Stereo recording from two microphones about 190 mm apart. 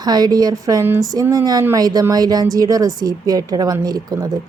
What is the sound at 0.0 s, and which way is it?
Speech, 20° right (ahead or behind).